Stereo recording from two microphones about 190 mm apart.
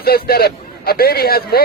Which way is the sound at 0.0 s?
55° left (ahead or behind).